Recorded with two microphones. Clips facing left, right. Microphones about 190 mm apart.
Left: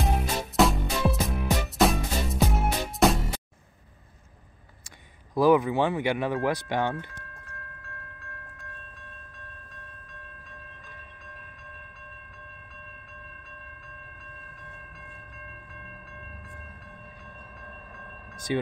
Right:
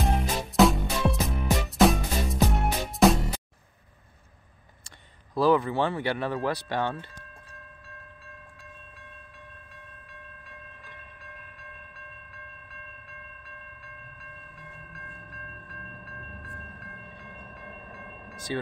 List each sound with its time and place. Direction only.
0.0 s music: centre (ahead or behind)
5.3 s speech: 15° left (ahead or behind)
18.5 s speech: 15° left (ahead or behind)